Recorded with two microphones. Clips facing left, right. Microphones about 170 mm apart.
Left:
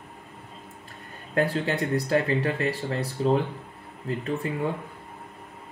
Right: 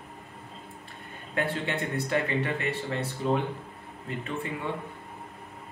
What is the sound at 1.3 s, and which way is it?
Speech, 40° left (ahead or behind).